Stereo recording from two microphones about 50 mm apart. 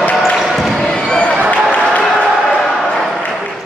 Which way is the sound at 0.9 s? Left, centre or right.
Centre.